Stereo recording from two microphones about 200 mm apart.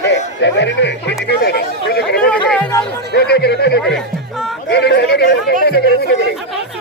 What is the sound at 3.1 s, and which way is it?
Speech, 55° left (ahead or behind).